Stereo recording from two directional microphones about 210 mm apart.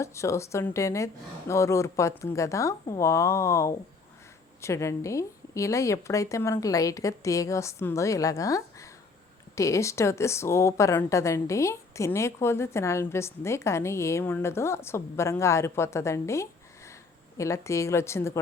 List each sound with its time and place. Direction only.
0.0 s speech: 15° left (ahead or behind)